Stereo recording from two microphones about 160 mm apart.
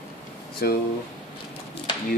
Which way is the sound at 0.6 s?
75° left (ahead or behind).